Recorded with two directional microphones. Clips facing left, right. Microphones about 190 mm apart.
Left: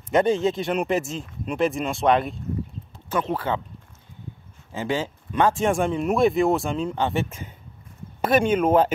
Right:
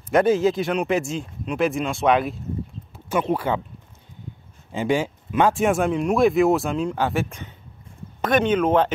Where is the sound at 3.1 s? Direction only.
15° right (ahead or behind).